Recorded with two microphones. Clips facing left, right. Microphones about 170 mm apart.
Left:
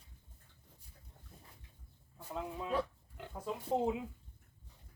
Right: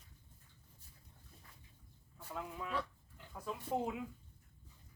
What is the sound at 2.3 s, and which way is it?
Speech, 25° left (ahead or behind).